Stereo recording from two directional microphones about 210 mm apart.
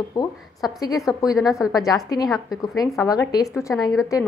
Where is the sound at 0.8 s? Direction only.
15° left (ahead or behind).